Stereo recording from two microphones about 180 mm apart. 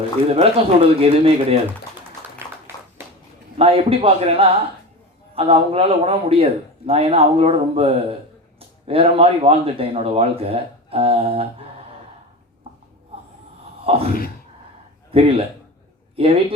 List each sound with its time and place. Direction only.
0.3 s speech: 30° right (ahead or behind)
3.6 s speech: 30° right (ahead or behind)
13.8 s speech: 30° right (ahead or behind)
15.1 s speech: 30° right (ahead or behind)